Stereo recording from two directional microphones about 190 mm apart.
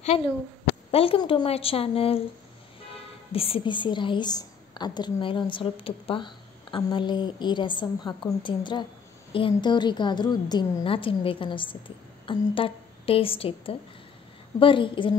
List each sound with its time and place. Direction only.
0.0 s a woman's voice: 30° left (ahead or behind)